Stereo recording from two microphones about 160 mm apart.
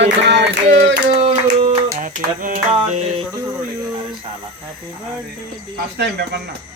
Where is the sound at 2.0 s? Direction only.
55° right (ahead or behind).